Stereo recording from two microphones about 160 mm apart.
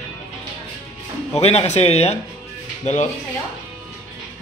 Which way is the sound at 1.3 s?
40° left (ahead or behind).